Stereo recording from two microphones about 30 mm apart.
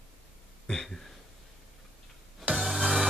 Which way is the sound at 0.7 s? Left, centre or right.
Left.